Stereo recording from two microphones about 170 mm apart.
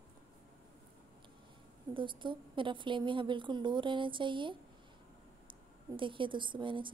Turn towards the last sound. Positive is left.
turn(degrees=-30)  # may be behind; listen again after turning